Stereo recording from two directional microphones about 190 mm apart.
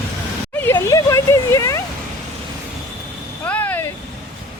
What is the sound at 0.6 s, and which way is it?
Speech, 15° left (ahead or behind).